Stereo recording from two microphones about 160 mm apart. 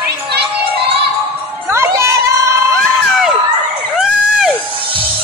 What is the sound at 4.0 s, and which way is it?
Crowd, 5° right (ahead or behind).